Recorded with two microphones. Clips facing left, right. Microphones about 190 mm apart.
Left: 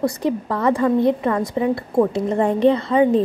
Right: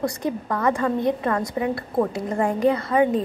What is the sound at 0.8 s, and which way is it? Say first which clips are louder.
A woman's voice: left 5 dB; 20° left (ahead or behind).